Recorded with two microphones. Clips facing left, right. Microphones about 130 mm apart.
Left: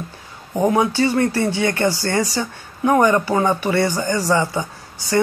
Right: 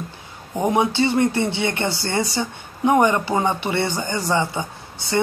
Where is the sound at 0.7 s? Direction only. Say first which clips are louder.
Left 1 dB; 25° right (ahead or behind).